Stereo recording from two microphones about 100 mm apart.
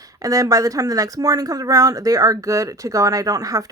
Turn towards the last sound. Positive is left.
turn(degrees=-35)  # may be behind; listen again after turning